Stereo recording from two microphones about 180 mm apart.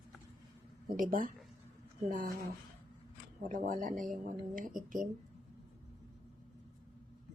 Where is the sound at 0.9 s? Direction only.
50° right (ahead or behind).